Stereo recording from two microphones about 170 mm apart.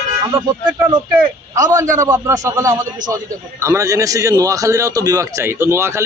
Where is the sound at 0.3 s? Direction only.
10° right (ahead or behind).